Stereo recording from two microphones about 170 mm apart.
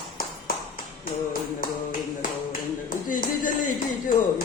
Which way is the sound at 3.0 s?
50° left (ahead or behind).